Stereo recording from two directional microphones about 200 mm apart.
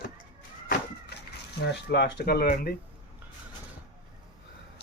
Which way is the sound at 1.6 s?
60° left (ahead or behind).